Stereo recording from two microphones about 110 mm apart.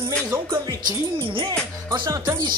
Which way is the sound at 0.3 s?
25° right (ahead or behind).